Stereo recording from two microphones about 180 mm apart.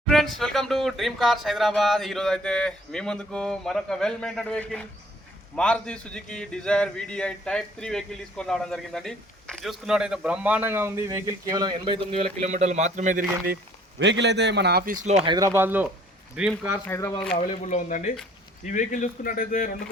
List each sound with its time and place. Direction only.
0.1 s a man's voice: centre (ahead or behind); by 11.9 s 25° right (ahead or behind)
12.2 s speech: 40° right (ahead or behind)
14.0 s a man's voice: 75° right (ahead or behind); by 15.1 s 50° right (ahead or behind)
15.2 s a man's voice: 20° right (ahead or behind); by 16.7 s 5° right (ahead or behind)
16.8 s speech: 15° left (ahead or behind)
17.3 s speech: 45° left (ahead or behind)